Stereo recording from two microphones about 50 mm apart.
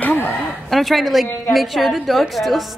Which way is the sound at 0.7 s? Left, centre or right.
Centre.